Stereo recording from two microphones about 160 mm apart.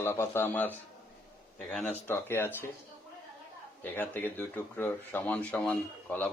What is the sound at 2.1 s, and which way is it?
Speech, 15° left (ahead or behind).